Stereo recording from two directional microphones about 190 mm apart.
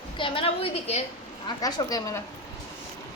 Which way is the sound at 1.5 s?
20° left (ahead or behind).